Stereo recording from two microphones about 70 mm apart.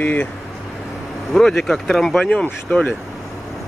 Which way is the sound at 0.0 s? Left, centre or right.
Left.